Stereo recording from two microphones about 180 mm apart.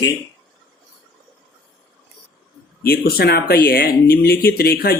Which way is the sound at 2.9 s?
55° left (ahead or behind).